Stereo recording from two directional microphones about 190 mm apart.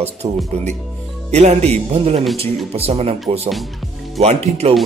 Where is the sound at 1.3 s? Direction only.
35° right (ahead or behind).